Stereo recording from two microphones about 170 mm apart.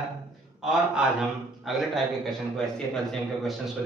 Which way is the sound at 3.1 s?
Centre (ahead or behind).